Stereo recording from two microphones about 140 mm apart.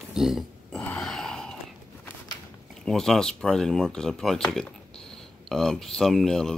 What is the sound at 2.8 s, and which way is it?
Speech, 5° left (ahead or behind).